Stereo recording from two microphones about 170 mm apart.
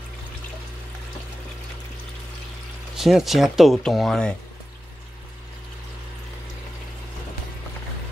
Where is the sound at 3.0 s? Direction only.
Centre (ahead or behind).